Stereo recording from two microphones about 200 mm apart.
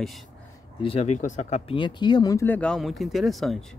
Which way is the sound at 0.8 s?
30° left (ahead or behind).